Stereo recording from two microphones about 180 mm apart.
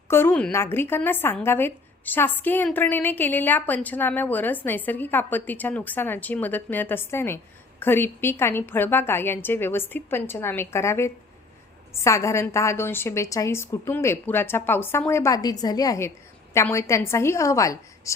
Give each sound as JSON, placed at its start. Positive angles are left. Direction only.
{"t": 0.1, "sound": "speech", "side_deg": 10}